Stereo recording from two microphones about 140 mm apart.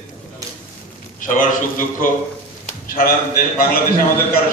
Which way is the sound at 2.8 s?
90° left.